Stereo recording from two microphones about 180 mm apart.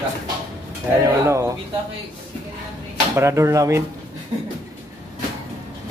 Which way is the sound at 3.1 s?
15° right (ahead or behind).